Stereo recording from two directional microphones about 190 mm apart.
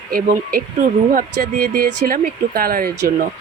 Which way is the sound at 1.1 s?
50° right (ahead or behind).